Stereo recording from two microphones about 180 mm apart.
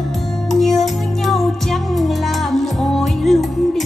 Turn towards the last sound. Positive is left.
turn(degrees=0)  # may be behind; listen again after turning